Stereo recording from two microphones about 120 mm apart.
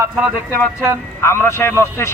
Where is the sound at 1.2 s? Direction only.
20° left (ahead or behind).